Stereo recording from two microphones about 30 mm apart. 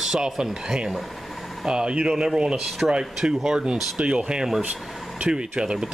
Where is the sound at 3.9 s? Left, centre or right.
Right.